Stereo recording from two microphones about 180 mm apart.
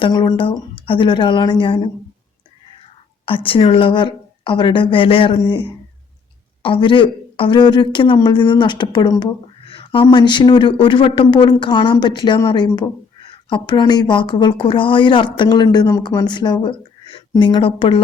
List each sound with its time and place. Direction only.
0.0 s a woman's voice: 25° left (ahead or behind)
3.2 s a woman's voice: 30° left (ahead or behind)
6.6 s a woman's voice: 30° left (ahead or behind)